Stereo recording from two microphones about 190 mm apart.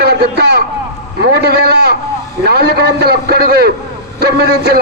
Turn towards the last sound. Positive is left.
turn(degrees=-60)  # may be behind; listen again after turning